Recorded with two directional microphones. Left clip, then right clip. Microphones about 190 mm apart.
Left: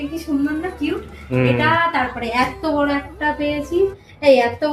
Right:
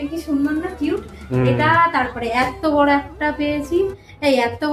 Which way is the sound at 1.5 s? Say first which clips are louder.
Right 3 dB; 15° right (ahead or behind).